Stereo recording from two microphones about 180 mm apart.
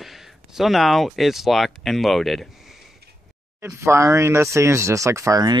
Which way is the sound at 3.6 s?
15° right (ahead or behind).